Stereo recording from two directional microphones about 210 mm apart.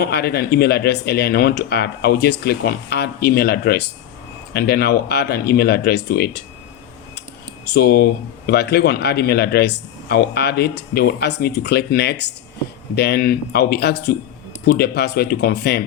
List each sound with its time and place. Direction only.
0.0 s a man's voice: 50° left (ahead or behind)
7.7 s a man's voice: 50° left (ahead or behind)